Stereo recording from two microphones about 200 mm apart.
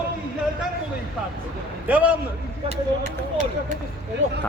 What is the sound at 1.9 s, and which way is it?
Speech, 10° right (ahead or behind).